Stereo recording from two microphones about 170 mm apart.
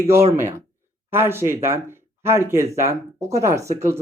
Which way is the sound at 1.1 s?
15° right (ahead or behind).